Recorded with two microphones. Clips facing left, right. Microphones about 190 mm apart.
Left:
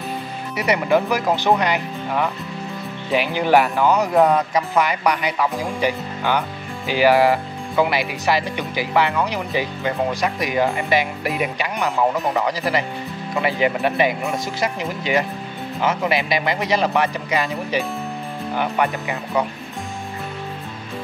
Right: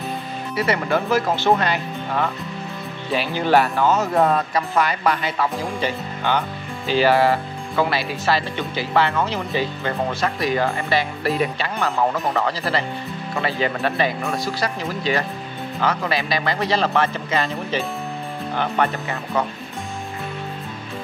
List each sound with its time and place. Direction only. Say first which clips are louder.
0.6 s speech: left 3 dB; 20° left (ahead or behind)